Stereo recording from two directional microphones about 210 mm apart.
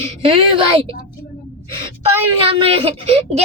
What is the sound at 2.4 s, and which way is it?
Speech, 25° right (ahead or behind).